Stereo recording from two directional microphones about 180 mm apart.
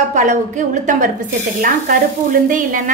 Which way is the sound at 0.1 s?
45° right (ahead or behind).